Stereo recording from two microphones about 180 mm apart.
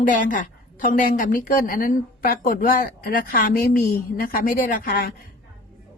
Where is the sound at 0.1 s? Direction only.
45° left (ahead or behind).